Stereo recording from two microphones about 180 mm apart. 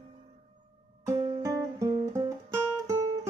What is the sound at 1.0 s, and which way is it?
Music, 15° right (ahead or behind).